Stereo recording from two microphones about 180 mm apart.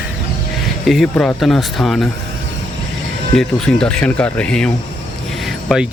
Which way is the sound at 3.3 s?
5° left (ahead or behind).